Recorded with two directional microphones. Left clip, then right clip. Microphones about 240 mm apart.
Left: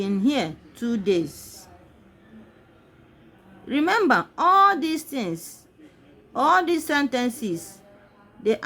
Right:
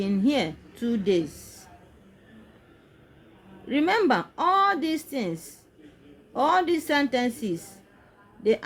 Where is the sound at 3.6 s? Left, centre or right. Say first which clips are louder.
Left 2 dB; centre.